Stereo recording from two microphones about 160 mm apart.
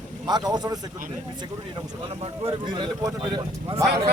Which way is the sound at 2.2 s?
35° right (ahead or behind).